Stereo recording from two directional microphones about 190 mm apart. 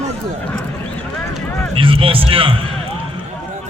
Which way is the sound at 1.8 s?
30° right (ahead or behind).